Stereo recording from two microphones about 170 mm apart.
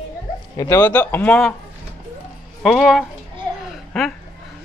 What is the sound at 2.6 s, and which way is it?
Speech, centre (ahead or behind).